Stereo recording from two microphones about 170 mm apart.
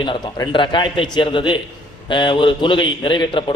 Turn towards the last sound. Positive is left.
turn(degrees=30)  # may be behind; listen again after turning